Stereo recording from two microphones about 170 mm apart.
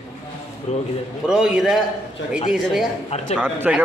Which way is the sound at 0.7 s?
40° left (ahead or behind).